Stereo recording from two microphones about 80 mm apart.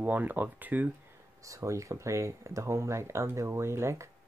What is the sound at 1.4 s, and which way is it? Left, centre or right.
Speech, right.